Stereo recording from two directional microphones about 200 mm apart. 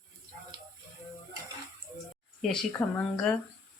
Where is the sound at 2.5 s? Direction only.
5° left (ahead or behind).